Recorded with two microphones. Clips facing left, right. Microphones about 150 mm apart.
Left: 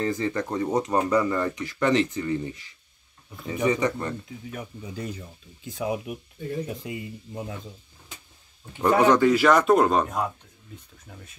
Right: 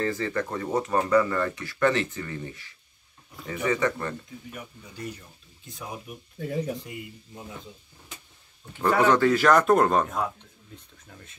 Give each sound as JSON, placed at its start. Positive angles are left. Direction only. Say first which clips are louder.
{"t": 0.0, "sound": "speech", "louder": "left 1 dB", "side_deg": 20}
{"t": 5.8, "sound": "speech", "louder": "left 10 dB", "side_deg": 90}
{"t": 8.8, "sound": "speech", "louder": "left 2 dB", "side_deg": 15}